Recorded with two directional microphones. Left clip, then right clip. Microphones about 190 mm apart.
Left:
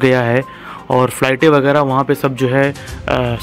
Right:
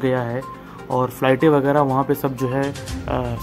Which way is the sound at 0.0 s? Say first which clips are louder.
Left 9 dB; 25° left (ahead or behind).